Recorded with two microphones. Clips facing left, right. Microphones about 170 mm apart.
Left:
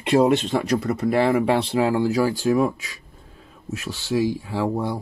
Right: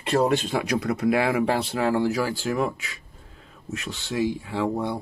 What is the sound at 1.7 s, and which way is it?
Speech, 15° left (ahead or behind).